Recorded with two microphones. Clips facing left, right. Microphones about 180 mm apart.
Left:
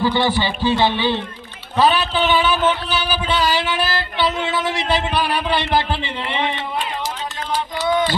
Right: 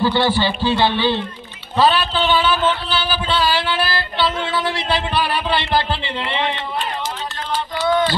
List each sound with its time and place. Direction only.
0.0 s music: 15° left (ahead or behind)
4.5 s speech: 20° left (ahead or behind)
5.8 s music: 15° left (ahead or behind)